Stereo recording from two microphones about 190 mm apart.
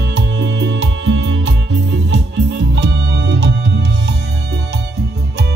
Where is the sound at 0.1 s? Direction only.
65° right (ahead or behind).